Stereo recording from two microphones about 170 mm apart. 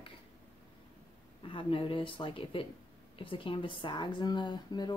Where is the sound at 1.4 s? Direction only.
30° left (ahead or behind).